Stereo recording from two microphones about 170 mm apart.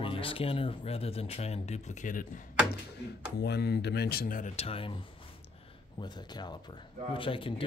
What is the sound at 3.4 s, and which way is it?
Speech, 70° left (ahead or behind).